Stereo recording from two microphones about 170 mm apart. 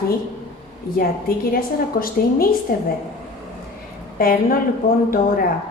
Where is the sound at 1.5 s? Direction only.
60° left (ahead or behind).